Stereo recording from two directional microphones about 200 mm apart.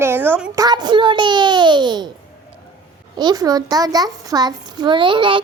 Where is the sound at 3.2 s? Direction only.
20° right (ahead or behind).